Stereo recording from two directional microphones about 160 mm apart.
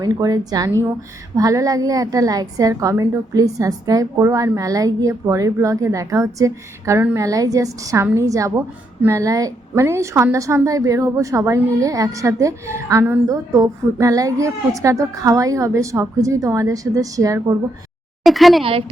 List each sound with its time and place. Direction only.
0.0 s a woman's voice: 25° right (ahead or behind)
18.3 s a woman's voice: centre (ahead or behind)
18.6 s a woman's voice: 35° right (ahead or behind)